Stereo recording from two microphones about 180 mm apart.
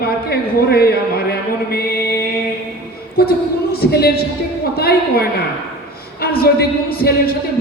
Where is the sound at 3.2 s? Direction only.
60° left (ahead or behind).